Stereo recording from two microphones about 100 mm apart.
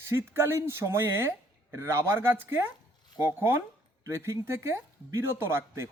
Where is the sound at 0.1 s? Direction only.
25° right (ahead or behind).